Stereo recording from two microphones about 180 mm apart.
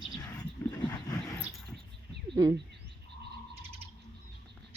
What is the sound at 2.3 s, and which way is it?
Speech, 25° right (ahead or behind).